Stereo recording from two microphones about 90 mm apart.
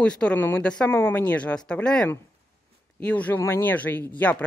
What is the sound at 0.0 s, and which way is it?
Speech, 10° left (ahead or behind).